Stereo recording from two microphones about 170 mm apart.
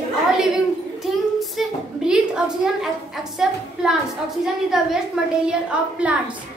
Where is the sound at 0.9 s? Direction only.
Centre (ahead or behind).